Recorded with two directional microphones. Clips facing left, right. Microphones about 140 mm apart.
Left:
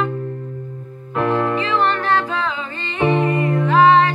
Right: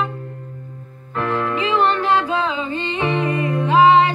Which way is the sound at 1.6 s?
15° right (ahead or behind).